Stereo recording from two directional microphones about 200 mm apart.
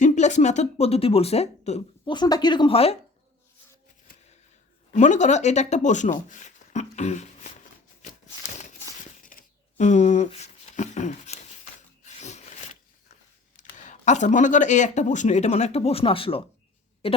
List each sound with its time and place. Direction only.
0.0 s speech: 35° left (ahead or behind)
2.1 s speech: 20° left (ahead or behind)
4.9 s speech: 35° left (ahead or behind)
9.2 s a sound: 40° left (ahead or behind)
13.6 s speech: 35° left (ahead or behind)